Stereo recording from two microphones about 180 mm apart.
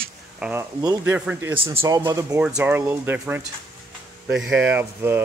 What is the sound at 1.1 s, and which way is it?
A man's voice, 10° right (ahead or behind).